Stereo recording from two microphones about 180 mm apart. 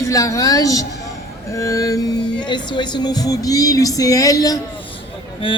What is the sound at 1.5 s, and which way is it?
Music, 15° left (ahead or behind).